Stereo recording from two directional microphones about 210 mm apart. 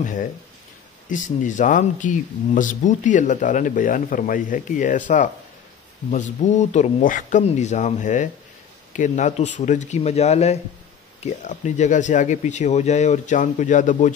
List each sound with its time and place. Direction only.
0.0 s speech: 40° left (ahead or behind)